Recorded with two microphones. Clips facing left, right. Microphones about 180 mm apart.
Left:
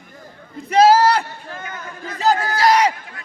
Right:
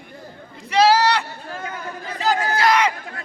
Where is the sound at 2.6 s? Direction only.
40° left (ahead or behind).